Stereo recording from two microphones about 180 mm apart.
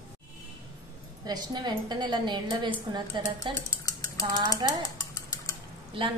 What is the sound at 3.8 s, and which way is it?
Mechanisms, 20° left (ahead or behind).